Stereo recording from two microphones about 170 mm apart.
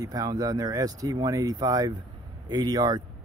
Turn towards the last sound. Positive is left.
turn(degrees=-25)  # may be behind; listen again after turning